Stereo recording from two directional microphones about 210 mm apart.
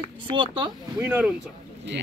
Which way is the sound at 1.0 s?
10° right (ahead or behind).